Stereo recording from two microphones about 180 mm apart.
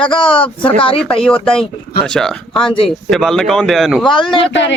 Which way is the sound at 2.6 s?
30° left (ahead or behind).